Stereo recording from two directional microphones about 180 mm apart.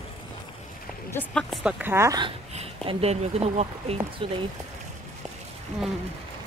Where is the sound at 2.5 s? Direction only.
35° right (ahead or behind).